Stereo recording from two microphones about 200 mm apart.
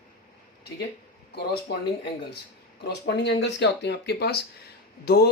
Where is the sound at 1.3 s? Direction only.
55° left (ahead or behind).